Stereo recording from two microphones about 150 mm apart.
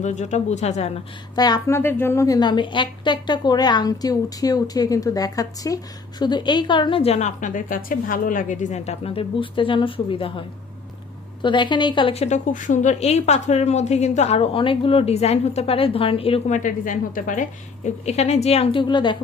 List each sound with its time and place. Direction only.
0.0 s a woman's voice: 50° left (ahead or behind)
1.4 s a woman's voice: 25° left (ahead or behind)
11.4 s a woman's voice: 30° left (ahead or behind)
16.5 s a woman's voice: 55° left (ahead or behind)
17.8 s a woman's voice: 45° left (ahead or behind)